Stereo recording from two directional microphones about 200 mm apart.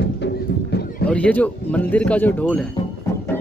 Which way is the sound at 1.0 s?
5° left (ahead or behind).